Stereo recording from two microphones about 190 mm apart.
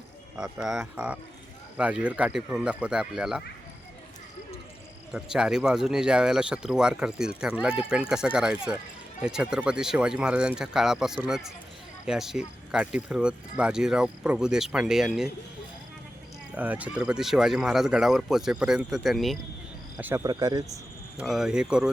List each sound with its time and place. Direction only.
0.3 s speech: 5° right (ahead or behind)
5.1 s speech: 5° right (ahead or behind)
16.6 s speech: 5° right (ahead or behind)
20.0 s speech: 10° right (ahead or behind)
21.2 s speech: 5° right (ahead or behind)